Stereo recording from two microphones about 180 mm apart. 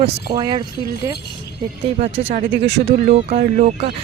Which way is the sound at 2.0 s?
35° right (ahead or behind).